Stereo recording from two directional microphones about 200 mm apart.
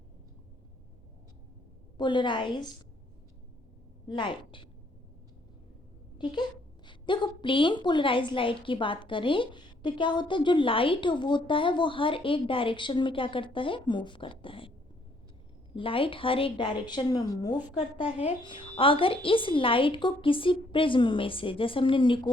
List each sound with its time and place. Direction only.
2.0 s a woman's voice: 25° left (ahead or behind)
4.1 s a woman's voice: 25° left (ahead or behind)
6.2 s a woman's voice: 20° left (ahead or behind)
15.7 s a woman's voice: 25° left (ahead or behind)